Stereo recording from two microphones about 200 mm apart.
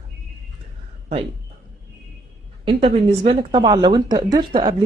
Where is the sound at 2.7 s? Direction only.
25° right (ahead or behind).